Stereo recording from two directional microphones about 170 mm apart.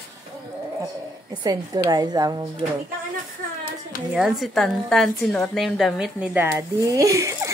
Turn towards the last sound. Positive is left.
turn(degrees=-20)  # may be behind; listen again after turning